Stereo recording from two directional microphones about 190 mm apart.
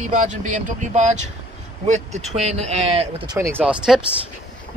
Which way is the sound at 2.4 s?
35° right (ahead or behind).